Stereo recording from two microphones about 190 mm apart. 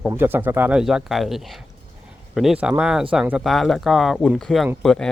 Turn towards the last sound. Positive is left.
turn(degrees=5)  # may be behind; listen again after turning